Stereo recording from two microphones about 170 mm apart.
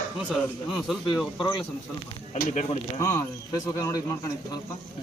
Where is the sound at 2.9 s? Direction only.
20° left (ahead or behind).